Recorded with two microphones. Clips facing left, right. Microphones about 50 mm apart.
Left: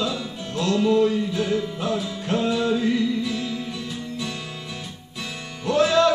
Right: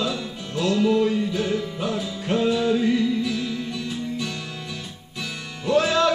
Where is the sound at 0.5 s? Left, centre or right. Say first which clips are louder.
Even; centre.